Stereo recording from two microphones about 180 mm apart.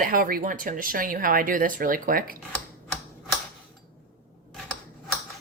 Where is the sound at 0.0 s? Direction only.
50° right (ahead or behind).